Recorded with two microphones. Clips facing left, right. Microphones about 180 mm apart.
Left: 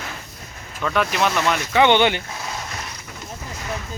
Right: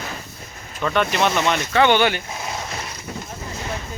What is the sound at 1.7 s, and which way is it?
Speech, 20° left (ahead or behind).